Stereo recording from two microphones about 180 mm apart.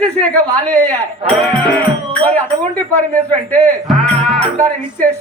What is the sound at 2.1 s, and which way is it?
A man's voice, 10° left (ahead or behind).